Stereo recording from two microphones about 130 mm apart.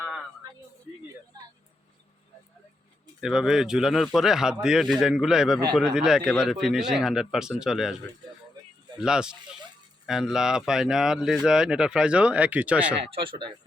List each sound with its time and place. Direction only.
3.2 s speech: 5° right (ahead or behind)
9.0 s speech: 5° right (ahead or behind)
13.1 s speech: 40° right (ahead or behind)